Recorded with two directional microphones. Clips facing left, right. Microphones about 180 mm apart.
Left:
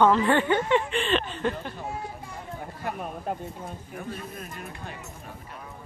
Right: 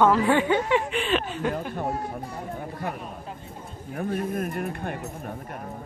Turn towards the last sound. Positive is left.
turn(degrees=-55)  # may be behind; listen again after turning